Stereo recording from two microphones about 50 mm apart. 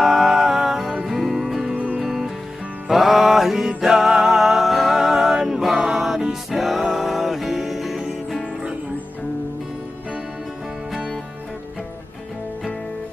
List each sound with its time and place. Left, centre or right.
0.0 s music: centre